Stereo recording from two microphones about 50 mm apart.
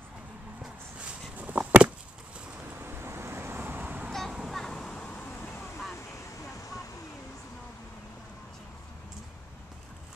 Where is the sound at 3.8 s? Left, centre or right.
Right.